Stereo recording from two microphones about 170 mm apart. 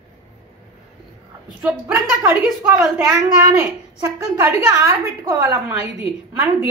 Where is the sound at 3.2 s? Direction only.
15° right (ahead or behind).